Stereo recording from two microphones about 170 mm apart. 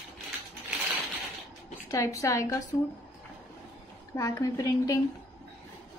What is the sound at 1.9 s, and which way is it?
Speech, 20° left (ahead or behind).